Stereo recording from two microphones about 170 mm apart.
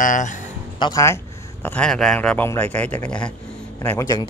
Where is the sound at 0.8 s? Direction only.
20° left (ahead or behind); by 3.3 s 5° left (ahead or behind).